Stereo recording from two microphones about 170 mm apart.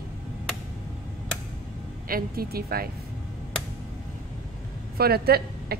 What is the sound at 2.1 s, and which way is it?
Speech, 60° right (ahead or behind).